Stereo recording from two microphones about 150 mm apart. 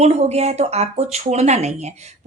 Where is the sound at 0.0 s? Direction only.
45° right (ahead or behind).